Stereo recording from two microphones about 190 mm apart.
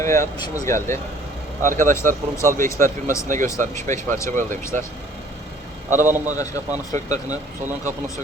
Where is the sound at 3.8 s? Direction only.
40° right (ahead or behind).